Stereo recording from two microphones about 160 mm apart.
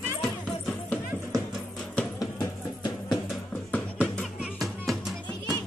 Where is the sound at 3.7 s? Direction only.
10° left (ahead or behind).